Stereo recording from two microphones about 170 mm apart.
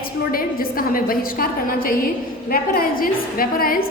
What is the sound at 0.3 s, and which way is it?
A woman's voice, 60° left (ahead or behind).